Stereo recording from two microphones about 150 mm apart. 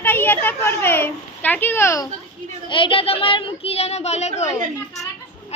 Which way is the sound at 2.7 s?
35° left (ahead or behind).